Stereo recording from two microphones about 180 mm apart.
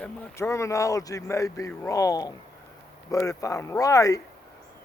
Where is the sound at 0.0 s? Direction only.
15° left (ahead or behind).